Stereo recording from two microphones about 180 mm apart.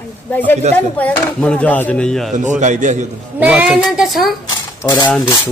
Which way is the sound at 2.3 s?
40° right (ahead or behind).